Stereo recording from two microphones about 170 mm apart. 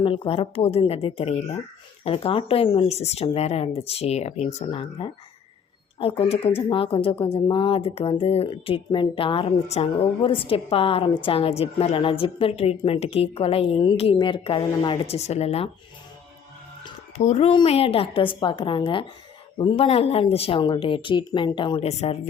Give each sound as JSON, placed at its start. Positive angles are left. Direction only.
{"t": 0.0, "sound": "speech", "side_deg": 30}
{"t": 17.2, "sound": "speech", "side_deg": 40}